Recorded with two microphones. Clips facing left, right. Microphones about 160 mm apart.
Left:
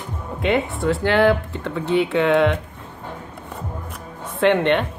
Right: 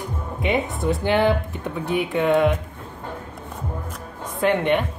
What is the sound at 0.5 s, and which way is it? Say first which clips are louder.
Speech: left 2 dB; 20° right (ahead or behind).